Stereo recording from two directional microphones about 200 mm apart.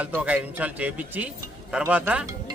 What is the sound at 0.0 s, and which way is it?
A man's voice, 5° right (ahead or behind).